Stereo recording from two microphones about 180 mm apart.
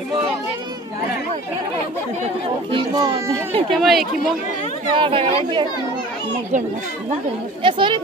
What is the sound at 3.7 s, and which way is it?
Speech, centre (ahead or behind).